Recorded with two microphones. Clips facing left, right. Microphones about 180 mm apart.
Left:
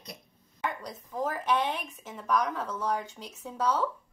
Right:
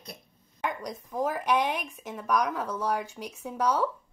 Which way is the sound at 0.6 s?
10° right (ahead or behind).